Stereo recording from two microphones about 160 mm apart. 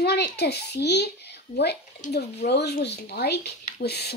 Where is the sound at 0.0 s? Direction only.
90° left.